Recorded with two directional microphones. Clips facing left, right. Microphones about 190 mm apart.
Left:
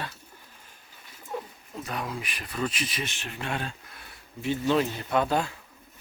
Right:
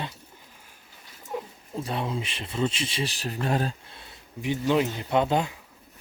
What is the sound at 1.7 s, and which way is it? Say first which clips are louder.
Speech: right 4 dB; 30° right (ahead or behind).